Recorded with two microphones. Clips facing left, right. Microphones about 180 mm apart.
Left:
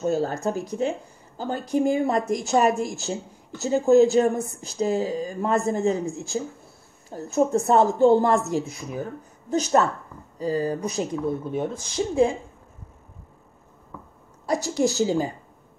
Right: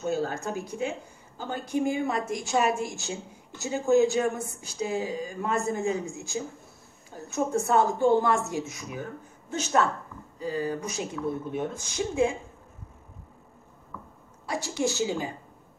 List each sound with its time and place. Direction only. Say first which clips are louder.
0.0 s speech: left 5 dB; 35° left (ahead or behind)
14.4 s speech: left 6 dB; 40° left (ahead or behind)